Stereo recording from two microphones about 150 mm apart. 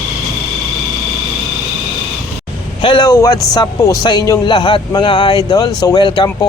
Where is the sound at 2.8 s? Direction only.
30° left (ahead or behind).